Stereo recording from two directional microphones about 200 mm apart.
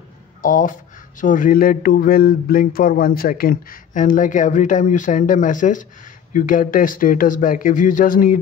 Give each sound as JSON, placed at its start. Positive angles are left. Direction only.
{"t": 0.4, "sound": "speech", "side_deg": 40}